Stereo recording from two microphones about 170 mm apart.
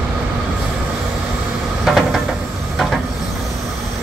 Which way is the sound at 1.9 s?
Centre (ahead or behind).